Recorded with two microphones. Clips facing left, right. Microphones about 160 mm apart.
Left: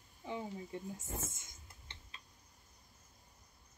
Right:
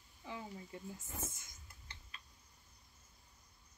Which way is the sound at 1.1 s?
25° left (ahead or behind).